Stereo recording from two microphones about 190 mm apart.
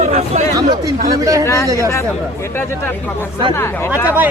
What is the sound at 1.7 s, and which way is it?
Speech, 15° right (ahead or behind).